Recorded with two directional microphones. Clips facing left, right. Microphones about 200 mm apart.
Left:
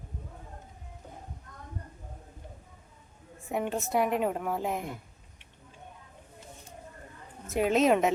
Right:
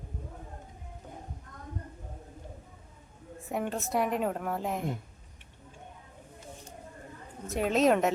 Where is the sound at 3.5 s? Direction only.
Centre (ahead or behind).